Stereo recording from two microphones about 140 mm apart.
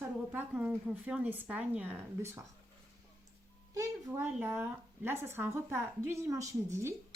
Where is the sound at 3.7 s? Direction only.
25° right (ahead or behind).